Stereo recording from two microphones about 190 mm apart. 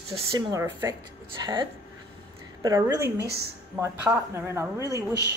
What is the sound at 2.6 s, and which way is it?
Speech, 20° right (ahead or behind).